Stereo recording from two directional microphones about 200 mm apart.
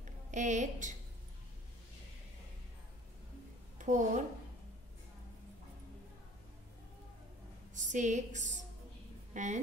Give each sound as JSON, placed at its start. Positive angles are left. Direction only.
{"t": 0.3, "sound": "a woman's voice", "side_deg": -35}
{"t": 3.7, "sound": "speech", "side_deg": -40}
{"t": 7.7, "sound": "a woman's voice", "side_deg": -35}